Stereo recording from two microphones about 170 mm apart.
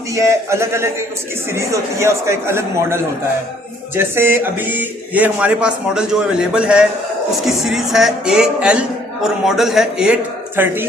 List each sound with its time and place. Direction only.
0.1 s speech: 15° right (ahead or behind)